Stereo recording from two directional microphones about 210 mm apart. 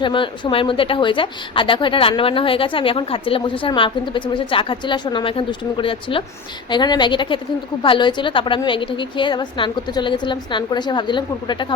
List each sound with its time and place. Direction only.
0.0 s a woman's voice: 25° left (ahead or behind)